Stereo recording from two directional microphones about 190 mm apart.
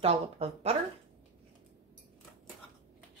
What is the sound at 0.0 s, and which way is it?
Speech, 30° right (ahead or behind).